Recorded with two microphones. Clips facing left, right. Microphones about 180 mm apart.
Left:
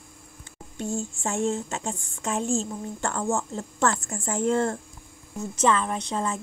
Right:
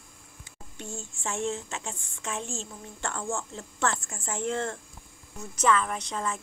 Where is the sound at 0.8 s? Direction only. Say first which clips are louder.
Left 9 dB; 40° left (ahead or behind).